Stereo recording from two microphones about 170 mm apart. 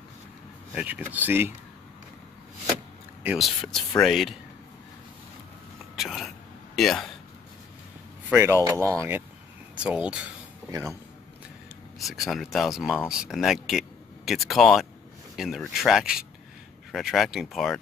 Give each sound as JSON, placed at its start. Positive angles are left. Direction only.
{"t": 0.7, "sound": "speech", "side_deg": -10}
{"t": 3.3, "sound": "speech", "side_deg": 0}
{"t": 5.9, "sound": "a sound", "side_deg": 0}
{"t": 8.3, "sound": "speech", "side_deg": -15}
{"t": 10.7, "sound": "speech", "side_deg": -15}
{"t": 12.0, "sound": "speech", "side_deg": 0}